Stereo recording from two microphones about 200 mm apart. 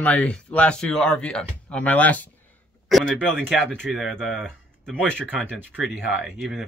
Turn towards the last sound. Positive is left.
turn(degrees=0)  # may be behind; listen again after turning